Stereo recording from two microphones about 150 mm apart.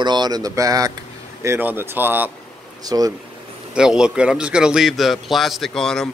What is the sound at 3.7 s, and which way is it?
Speech, 5° right (ahead or behind).